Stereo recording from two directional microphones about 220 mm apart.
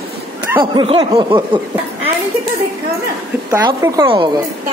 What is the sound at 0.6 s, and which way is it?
Speech, 20° right (ahead or behind).